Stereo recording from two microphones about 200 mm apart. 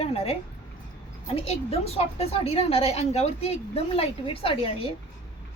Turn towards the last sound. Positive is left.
turn(degrees=30)  # may be behind; listen again after turning